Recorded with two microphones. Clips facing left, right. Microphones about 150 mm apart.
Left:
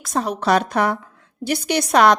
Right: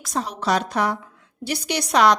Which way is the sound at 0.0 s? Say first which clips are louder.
Left 4 dB; 50° left (ahead or behind).